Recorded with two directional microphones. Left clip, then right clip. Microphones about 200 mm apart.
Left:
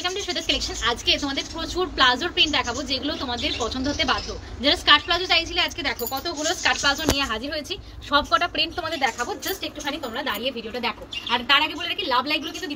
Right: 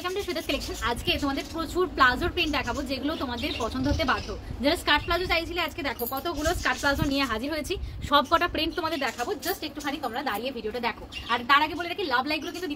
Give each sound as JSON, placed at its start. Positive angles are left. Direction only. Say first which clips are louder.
{"t": 0.0, "sound": "speech", "louder": "left 4 dB", "side_deg": -10}
{"t": 8.1, "sound": "a woman's voice", "louder": "left 2 dB", "side_deg": -45}
{"t": 8.8, "sound": "a woman's voice", "louder": "left 4 dB", "side_deg": -20}